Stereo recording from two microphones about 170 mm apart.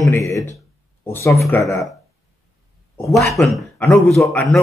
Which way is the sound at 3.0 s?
Centre (ahead or behind).